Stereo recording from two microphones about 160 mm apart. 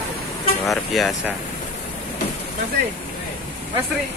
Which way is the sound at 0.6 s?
Centre (ahead or behind).